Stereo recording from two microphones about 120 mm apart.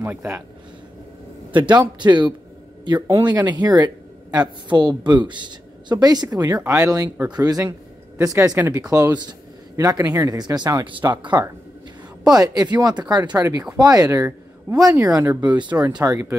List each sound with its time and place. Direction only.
0.0 s speech: 20° right (ahead or behind)
1.7 s speech: 40° right (ahead or behind)
15.5 s speech: 40° right (ahead or behind); by 16.3 s 20° right (ahead or behind)